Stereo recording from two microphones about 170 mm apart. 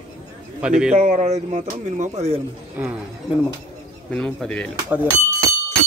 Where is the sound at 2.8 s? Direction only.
10° right (ahead or behind).